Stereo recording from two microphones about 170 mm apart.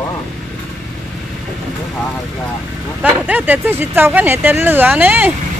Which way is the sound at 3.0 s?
10° right (ahead or behind).